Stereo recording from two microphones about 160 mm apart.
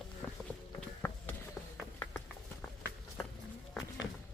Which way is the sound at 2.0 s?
10° left (ahead or behind).